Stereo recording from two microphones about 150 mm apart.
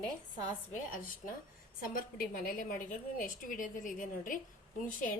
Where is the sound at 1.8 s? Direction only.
70° left (ahead or behind).